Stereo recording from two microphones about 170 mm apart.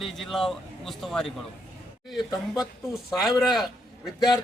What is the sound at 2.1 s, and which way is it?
Speech, 20° left (ahead or behind).